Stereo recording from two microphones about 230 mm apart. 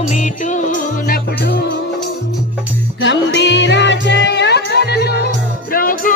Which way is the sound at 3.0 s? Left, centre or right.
Left.